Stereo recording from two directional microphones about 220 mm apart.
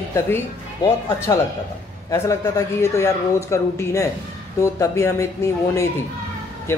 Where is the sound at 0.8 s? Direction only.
15° left (ahead or behind).